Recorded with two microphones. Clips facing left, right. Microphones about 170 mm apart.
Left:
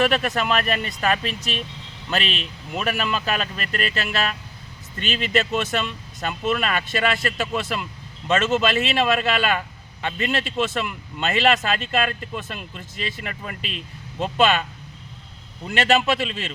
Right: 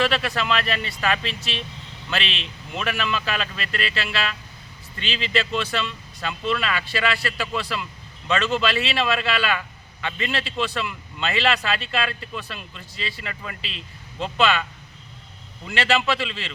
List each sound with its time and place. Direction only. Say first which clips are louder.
0.0 s speech: left 2 dB; 45° left (ahead or behind)
15.6 s speech: left 3 dB; 45° left (ahead or behind)